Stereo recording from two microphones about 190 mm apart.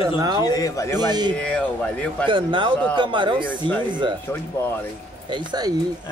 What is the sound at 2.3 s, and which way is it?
Speech, 25° right (ahead or behind).